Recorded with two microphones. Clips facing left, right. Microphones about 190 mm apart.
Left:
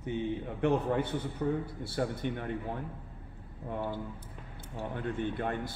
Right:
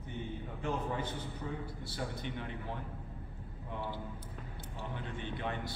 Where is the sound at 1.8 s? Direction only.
55° left (ahead or behind).